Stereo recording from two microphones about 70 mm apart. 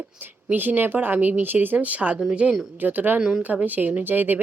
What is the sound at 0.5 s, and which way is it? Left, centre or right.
A woman's voice, right.